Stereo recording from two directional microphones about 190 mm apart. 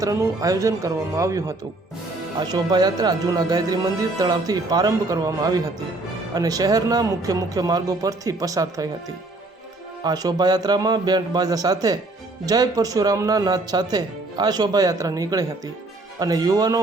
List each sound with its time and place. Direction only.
0.0 s speech: 15° right (ahead or behind)
10.0 s speech: 20° right (ahead or behind)